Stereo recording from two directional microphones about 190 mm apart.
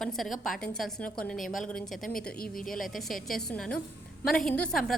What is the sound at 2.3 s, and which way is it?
Speech, 50° left (ahead or behind).